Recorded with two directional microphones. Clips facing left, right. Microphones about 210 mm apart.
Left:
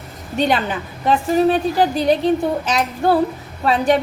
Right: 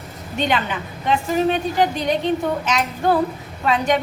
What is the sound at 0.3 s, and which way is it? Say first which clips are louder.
A woman's voice: left 3 dB; 40° left (ahead or behind).